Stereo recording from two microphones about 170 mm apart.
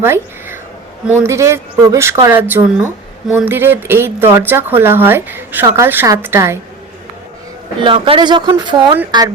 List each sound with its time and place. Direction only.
0.0 s a sound: 15° right (ahead or behind)
1.0 s speech: 15° right (ahead or behind)
7.8 s speech: 30° right (ahead or behind)